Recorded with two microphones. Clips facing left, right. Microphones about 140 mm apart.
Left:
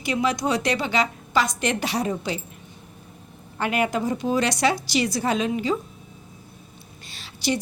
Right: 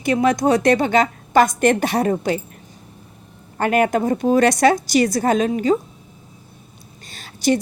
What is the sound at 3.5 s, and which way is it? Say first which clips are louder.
A woman's voice: right 6 dB; 50° right (ahead or behind).